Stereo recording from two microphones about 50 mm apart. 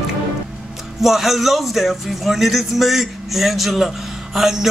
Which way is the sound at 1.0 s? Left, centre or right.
Centre.